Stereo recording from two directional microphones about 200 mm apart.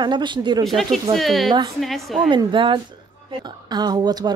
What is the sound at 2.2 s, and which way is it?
Speech, 25° right (ahead or behind).